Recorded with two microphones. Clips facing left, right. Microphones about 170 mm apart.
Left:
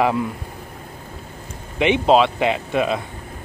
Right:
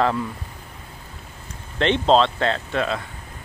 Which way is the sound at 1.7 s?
10° left (ahead or behind).